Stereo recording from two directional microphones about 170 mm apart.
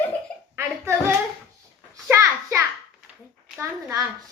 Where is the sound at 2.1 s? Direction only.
15° right (ahead or behind).